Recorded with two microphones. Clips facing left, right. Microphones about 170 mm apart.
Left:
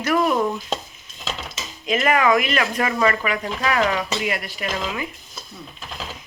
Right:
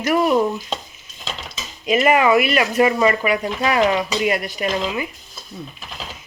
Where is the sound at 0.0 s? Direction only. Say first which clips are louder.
Right 3 dB; 10° right (ahead or behind).